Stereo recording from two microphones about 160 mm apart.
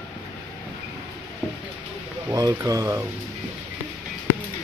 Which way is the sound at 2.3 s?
20° right (ahead or behind).